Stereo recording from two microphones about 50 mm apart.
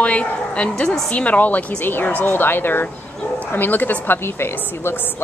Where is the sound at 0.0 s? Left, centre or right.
Left.